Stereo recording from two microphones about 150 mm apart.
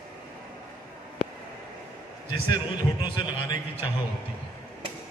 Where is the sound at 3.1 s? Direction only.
30° left (ahead or behind).